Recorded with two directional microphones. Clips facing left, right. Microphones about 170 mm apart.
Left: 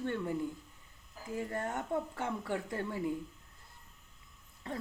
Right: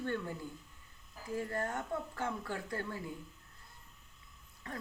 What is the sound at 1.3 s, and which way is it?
Speech, 20° left (ahead or behind).